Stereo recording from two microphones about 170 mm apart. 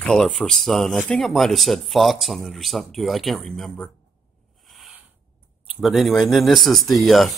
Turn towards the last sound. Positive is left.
turn(degrees=0)  # may be behind; listen again after turning